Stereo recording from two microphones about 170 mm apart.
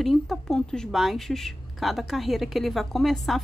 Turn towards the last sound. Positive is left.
turn(degrees=0)  # may be behind; listen again after turning